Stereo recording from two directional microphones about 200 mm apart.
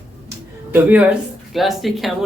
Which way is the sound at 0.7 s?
10° right (ahead or behind).